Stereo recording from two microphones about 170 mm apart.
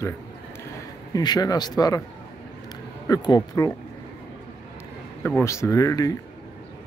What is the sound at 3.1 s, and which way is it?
Speech, 25° left (ahead or behind).